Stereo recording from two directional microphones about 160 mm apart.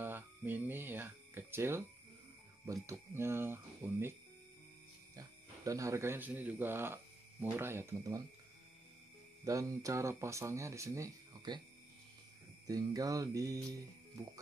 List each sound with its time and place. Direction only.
0.0 s speech: 10° right (ahead or behind)
5.1 s speech: 20° right (ahead or behind)
9.4 s speech: 20° right (ahead or behind)
12.6 s speech: 20° right (ahead or behind)